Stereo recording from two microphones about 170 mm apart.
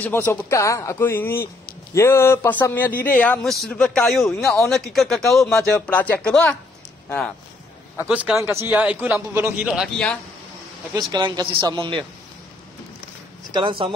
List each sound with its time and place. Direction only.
0.0 s a man's voice: 10° left (ahead or behind)
8.1 s a man's voice: 5° right (ahead or behind)
11.0 s speech: 25° right (ahead or behind)
13.5 s speech: 30° right (ahead or behind)